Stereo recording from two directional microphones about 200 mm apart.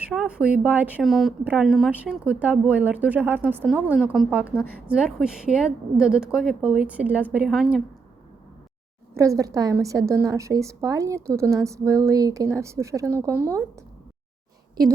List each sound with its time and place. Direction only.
0.0 s a woman's voice: 5° right (ahead or behind)
9.1 s speech: 15° right (ahead or behind)